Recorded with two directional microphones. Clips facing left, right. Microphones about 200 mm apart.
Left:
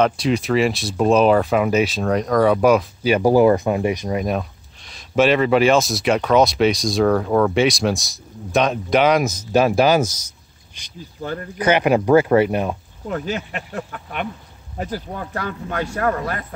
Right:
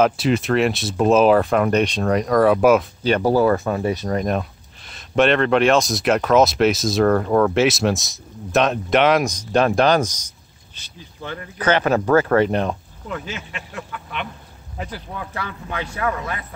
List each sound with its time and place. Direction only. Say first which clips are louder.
0.0 s speech: right 1 dB; centre (ahead or behind)
3.0 s speech: left 3 dB; 10° left (ahead or behind)
11.0 s speech: left 4 dB; 45° left (ahead or behind)
11.5 s speech: left 2 dB; 10° left (ahead or behind)
13.1 s speech: left 5 dB; 45° left (ahead or behind)